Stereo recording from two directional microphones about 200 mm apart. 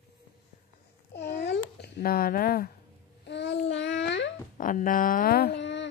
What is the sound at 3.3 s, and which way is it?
Child singing, 60° left (ahead or behind).